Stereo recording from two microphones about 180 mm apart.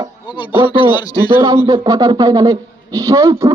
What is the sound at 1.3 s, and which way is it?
A man's voice, 25° right (ahead or behind).